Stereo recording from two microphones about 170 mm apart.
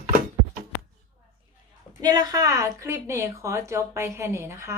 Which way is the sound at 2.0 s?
20° right (ahead or behind).